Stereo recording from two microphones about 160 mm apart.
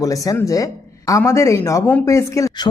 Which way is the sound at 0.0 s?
20° left (ahead or behind).